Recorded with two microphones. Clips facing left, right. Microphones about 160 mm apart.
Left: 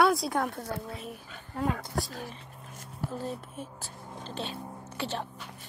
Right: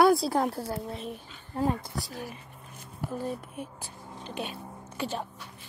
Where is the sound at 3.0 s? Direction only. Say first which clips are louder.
Right 2 dB; 15° right (ahead or behind).